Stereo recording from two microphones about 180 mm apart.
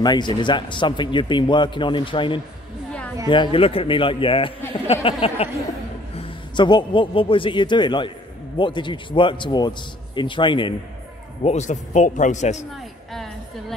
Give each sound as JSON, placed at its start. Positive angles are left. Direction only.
{"t": 0.0, "sound": "a man's voice", "side_deg": 25}
{"t": 11.4, "sound": "a man's voice", "side_deg": 40}
{"t": 13.1, "sound": "a sound", "side_deg": 0}